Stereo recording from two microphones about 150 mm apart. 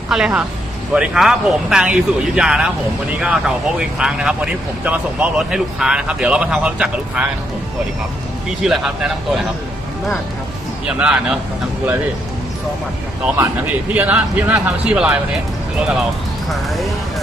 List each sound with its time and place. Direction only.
0.1 s speech: 5° right (ahead or behind)
8.6 s speech: 5° right (ahead or behind)
10.8 s speech: 5° right (ahead or behind)
13.2 s speech: 15° right (ahead or behind)
16.5 s speech: centre (ahead or behind)